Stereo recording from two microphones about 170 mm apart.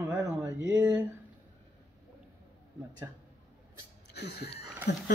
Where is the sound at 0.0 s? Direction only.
15° right (ahead or behind).